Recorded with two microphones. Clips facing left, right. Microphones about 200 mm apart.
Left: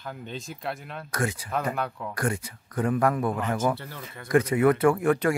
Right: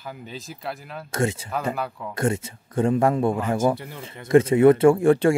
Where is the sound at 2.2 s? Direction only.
25° right (ahead or behind).